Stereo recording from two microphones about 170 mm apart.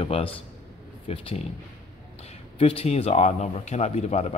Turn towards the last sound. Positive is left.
turn(degrees=40)  # may be behind; listen again after turning